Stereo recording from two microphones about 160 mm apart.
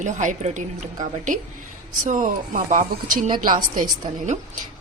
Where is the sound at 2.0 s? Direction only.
55° right (ahead or behind).